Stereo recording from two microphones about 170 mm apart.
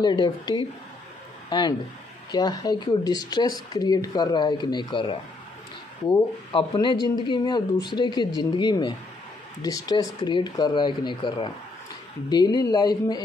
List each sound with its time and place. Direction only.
0.0 s speech: 25° left (ahead or behind)
6.5 s speech: 30° left (ahead or behind)